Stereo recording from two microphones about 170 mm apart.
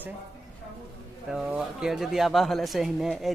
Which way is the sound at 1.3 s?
5° right (ahead or behind).